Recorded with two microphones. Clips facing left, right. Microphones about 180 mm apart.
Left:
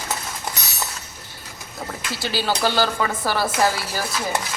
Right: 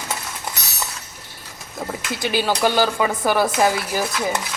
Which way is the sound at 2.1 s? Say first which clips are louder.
Right 3 dB; 20° right (ahead or behind).